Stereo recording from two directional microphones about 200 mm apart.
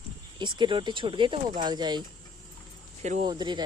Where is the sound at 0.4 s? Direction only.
25° right (ahead or behind).